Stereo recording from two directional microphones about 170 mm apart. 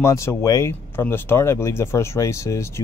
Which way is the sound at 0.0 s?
15° left (ahead or behind).